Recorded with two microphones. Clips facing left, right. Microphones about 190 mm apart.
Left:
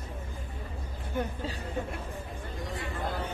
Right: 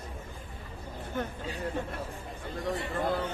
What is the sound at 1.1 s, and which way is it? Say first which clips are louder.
Speech: left 2 dB; 10° left (ahead or behind).